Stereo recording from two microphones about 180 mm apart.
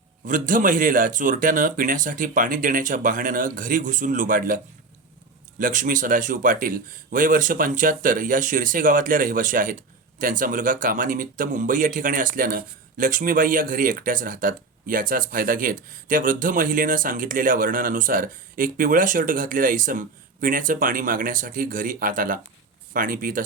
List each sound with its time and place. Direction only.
0.3 s speech: 50° right (ahead or behind)